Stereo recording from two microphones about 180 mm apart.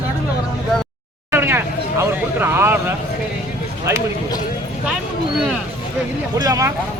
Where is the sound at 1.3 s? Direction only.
15° right (ahead or behind).